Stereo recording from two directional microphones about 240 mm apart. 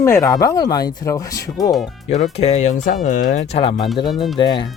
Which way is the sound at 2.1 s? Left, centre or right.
Left.